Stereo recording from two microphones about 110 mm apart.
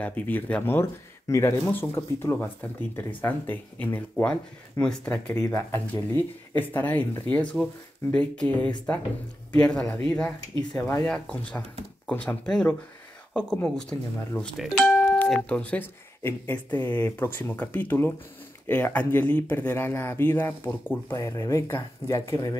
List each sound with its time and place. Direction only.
0.0 s speech: 15° left (ahead or behind)
10.8 s speech: 25° left (ahead or behind)
11.1 s speech: 10° left (ahead or behind); by 22.6 s 30° left (ahead or behind)